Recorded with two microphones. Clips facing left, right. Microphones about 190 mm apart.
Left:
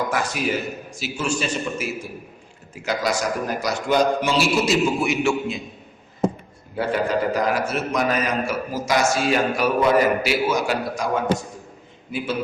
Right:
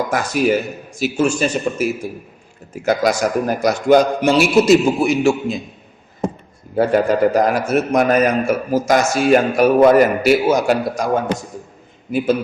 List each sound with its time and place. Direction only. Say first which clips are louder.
0.1 s a man's voice: right 7 dB; 45° right (ahead or behind)
6.7 s a man's voice: right 7 dB; 45° right (ahead or behind)